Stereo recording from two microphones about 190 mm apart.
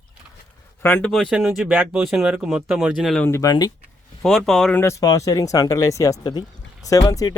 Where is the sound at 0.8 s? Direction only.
10° left (ahead or behind).